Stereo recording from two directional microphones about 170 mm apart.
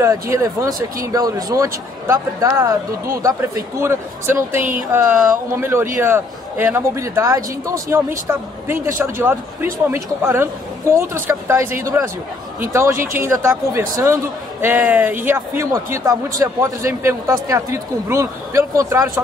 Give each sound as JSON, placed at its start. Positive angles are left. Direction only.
{"t": 0.0, "sound": "speech", "side_deg": -20}
{"t": 13.0, "sound": "speech", "side_deg": -15}